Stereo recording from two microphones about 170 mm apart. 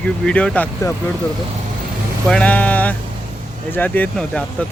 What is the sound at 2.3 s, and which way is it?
Speech, 5° left (ahead or behind).